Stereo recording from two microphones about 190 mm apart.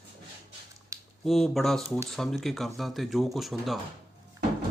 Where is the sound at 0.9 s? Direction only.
15° right (ahead or behind).